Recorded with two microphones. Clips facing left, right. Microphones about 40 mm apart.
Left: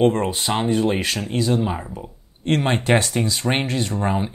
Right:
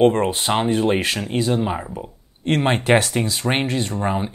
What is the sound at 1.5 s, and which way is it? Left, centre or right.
Speech, centre.